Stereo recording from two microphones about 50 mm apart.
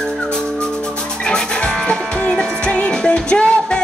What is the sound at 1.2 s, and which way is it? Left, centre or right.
Music, centre.